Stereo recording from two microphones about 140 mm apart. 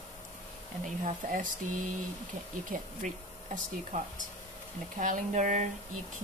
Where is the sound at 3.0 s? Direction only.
60° right (ahead or behind).